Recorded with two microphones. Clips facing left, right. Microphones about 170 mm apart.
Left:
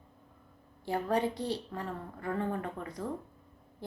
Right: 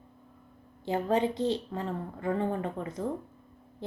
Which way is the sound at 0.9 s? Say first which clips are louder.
Right 3 dB; 20° right (ahead or behind).